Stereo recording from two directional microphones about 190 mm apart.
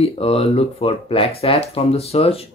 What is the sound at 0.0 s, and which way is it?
Speech, 30° left (ahead or behind).